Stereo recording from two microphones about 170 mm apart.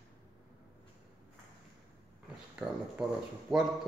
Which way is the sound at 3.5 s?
Centre (ahead or behind).